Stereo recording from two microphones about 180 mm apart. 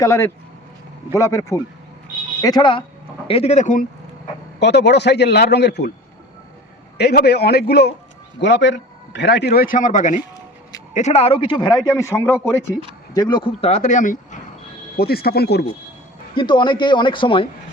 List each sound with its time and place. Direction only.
0.0 s a man's voice: 15° left (ahead or behind); by 3.8 s 45° left (ahead or behind)
4.6 s speech: 70° left (ahead or behind)
7.0 s speech: 65° left (ahead or behind)
8.4 s a man's voice: 80° left; by 14.3 s 45° left (ahead or behind)
14.9 s speech: 60° left (ahead or behind)
16.3 s a man's voice: 25° left (ahead or behind)